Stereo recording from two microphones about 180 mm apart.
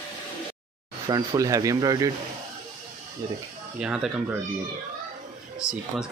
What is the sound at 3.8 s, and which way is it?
Speech, 5° right (ahead or behind).